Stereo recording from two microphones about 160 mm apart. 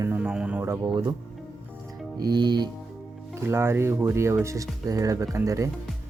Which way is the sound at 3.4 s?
15° right (ahead or behind).